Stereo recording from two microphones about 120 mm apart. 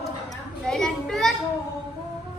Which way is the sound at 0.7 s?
5° left (ahead or behind).